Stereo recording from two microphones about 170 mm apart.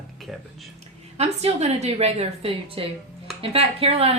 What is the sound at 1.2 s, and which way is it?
A woman's voice, 40° right (ahead or behind).